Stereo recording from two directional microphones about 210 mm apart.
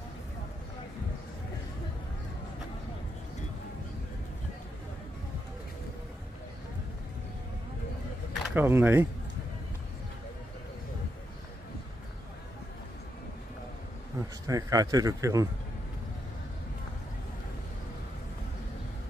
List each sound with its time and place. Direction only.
8.5 s speech: 10° right (ahead or behind)
14.2 s a sound: 15° right (ahead or behind)
14.5 s speech: 15° right (ahead or behind)